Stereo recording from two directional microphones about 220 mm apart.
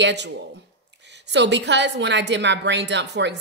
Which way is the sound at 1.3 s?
50° right (ahead or behind).